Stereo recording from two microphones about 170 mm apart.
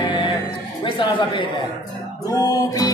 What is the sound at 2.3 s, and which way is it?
Music, 20° left (ahead or behind).